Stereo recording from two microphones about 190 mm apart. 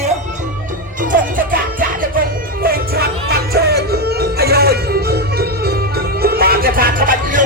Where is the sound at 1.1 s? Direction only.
45° right (ahead or behind).